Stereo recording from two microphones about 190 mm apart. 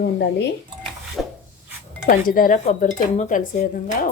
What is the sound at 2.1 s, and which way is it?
Dishes, 45° left (ahead or behind).